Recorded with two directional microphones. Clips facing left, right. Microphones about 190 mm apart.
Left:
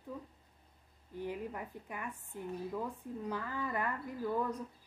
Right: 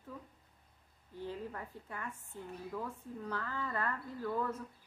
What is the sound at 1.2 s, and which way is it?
Speech, 15° left (ahead or behind).